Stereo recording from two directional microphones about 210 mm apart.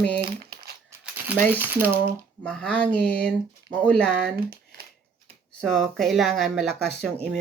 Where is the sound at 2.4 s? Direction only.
5° left (ahead or behind).